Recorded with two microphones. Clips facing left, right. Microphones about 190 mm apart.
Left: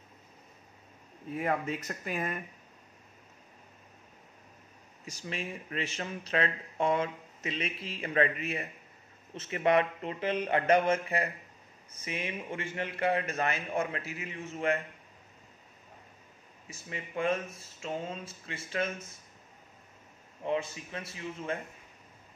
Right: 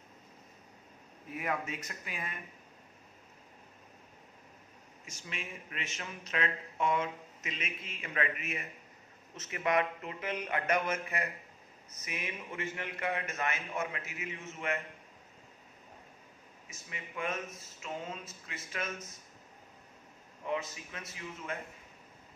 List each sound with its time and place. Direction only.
1.9 s speech: 45° left (ahead or behind)
5.0 s speech: 35° left (ahead or behind)
16.6 s speech: 30° left (ahead or behind)
20.4 s speech: 30° left (ahead or behind)